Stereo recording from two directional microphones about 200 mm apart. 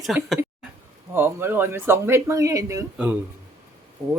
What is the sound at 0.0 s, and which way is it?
Speech, centre (ahead or behind).